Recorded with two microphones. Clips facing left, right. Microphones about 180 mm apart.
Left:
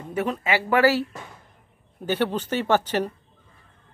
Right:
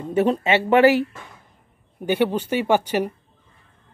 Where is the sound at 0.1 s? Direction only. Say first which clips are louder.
Right 6 dB; 30° right (ahead or behind).